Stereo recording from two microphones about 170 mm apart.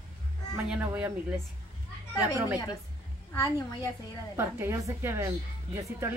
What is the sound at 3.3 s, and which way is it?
Speech, 20° left (ahead or behind).